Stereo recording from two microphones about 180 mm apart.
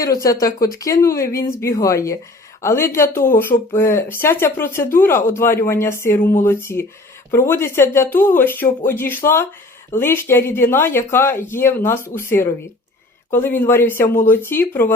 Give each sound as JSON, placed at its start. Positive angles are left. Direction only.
{"t": 0.0, "sound": "speech", "side_deg": 20}